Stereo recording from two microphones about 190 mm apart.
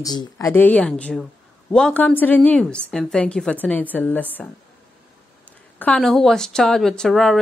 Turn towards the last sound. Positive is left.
turn(degrees=5)  # may be behind; listen again after turning